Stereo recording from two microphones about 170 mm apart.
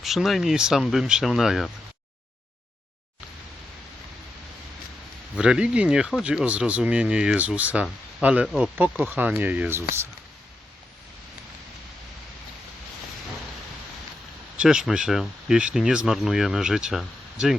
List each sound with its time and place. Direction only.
0.0 s speech: centre (ahead or behind)
5.4 s speech: 5° right (ahead or behind)
14.6 s speech: 5° right (ahead or behind)